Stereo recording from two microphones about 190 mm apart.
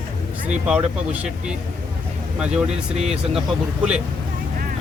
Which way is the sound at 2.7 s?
35° right (ahead or behind).